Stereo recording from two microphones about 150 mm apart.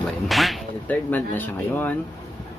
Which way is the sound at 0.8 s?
10° left (ahead or behind).